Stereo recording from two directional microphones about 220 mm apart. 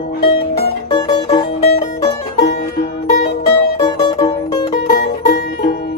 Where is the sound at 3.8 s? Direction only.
20° left (ahead or behind).